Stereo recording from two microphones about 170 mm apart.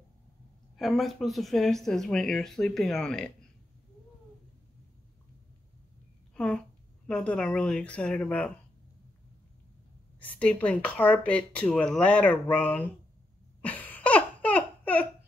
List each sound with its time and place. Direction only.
0.7 s speech: centre (ahead or behind)
6.3 s speech: 5° left (ahead or behind)
10.2 s speech: 5° left (ahead or behind)
13.6 s laughter: 10° left (ahead or behind)